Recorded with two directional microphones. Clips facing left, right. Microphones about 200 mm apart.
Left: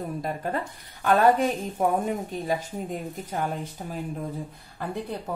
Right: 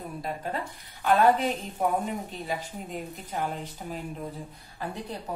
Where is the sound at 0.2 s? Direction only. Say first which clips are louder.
Left 1 dB; 50° left (ahead or behind).